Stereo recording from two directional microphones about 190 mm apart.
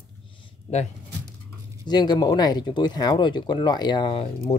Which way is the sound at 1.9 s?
20° left (ahead or behind).